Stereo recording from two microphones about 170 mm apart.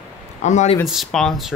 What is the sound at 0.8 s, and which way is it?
Speech, centre (ahead or behind).